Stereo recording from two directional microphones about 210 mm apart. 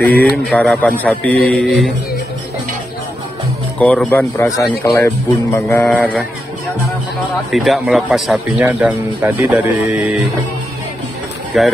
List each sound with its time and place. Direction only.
0.0 s speech: 5° left (ahead or behind)
3.8 s speech: 5° left (ahead or behind)
7.5 s speech: centre (ahead or behind)
11.5 s speech: centre (ahead or behind)